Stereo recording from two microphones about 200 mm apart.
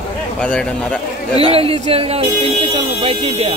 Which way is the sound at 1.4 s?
30° right (ahead or behind).